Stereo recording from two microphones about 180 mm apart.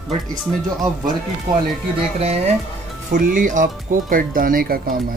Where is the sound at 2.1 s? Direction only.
35° right (ahead or behind).